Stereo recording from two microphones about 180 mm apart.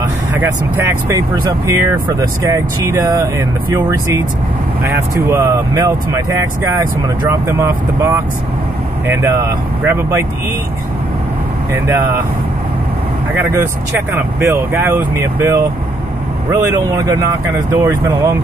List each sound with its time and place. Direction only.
0.4 s speech: 15° right (ahead or behind)
14.1 s speech: 15° right (ahead or behind)